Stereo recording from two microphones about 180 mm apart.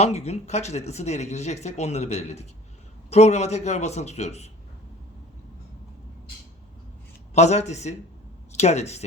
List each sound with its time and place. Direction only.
0.0 s speech: 35° left (ahead or behind)
7.3 s speech: 40° left (ahead or behind)